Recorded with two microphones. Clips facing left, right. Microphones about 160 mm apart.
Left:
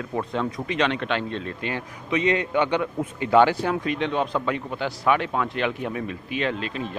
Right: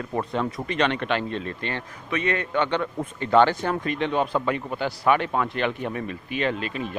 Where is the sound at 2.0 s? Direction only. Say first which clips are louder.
Left 3 dB; 15° left (ahead or behind).